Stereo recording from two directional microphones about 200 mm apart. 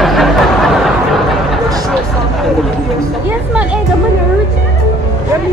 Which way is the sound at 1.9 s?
Centre (ahead or behind).